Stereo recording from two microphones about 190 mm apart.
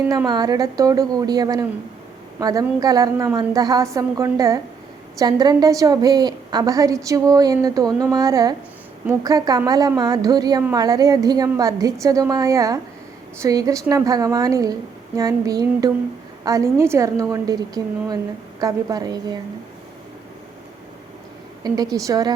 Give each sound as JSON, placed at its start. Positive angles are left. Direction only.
{"t": 0.1, "sound": "a woman's voice", "side_deg": -20}
{"t": 21.6, "sound": "a woman's voice", "side_deg": -20}